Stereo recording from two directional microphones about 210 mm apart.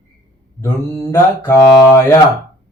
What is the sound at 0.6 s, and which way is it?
Mantra, 15° left (ahead or behind).